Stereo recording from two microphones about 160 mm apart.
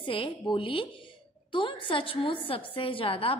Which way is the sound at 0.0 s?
30° left (ahead or behind).